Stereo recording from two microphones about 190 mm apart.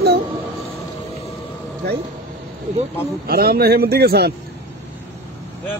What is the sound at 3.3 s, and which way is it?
Speech, 55° right (ahead or behind).